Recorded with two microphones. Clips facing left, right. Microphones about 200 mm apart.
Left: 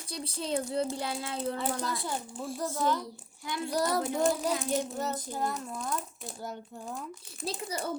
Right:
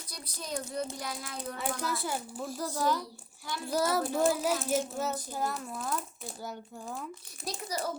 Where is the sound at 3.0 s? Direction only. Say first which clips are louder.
Left 3 dB; 20° left (ahead or behind).